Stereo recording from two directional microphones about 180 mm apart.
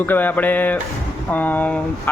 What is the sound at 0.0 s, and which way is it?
Speech, 10° left (ahead or behind).